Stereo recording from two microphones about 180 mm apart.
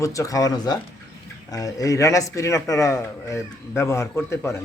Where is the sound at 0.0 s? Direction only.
20° left (ahead or behind).